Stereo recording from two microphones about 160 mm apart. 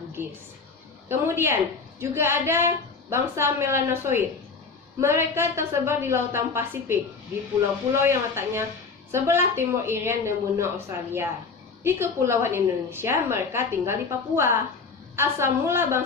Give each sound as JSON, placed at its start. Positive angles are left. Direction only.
{"t": 1.0, "sound": "a woman's voice", "side_deg": -15}
{"t": 8.0, "sound": "a woman's voice", "side_deg": -15}